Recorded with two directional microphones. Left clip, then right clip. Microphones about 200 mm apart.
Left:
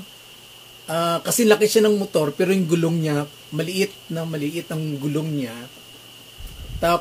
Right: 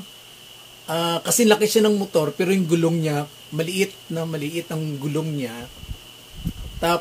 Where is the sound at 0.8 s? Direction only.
5° right (ahead or behind).